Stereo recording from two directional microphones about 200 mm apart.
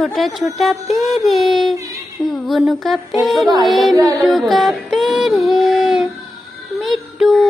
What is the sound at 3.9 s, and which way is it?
Music, 20° right (ahead or behind).